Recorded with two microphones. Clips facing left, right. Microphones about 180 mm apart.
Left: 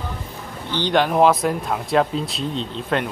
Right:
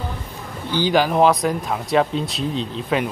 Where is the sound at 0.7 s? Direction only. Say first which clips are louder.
Right 1 dB; 5° right (ahead or behind).